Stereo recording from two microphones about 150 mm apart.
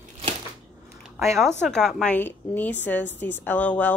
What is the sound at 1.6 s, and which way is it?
A woman's voice, centre (ahead or behind).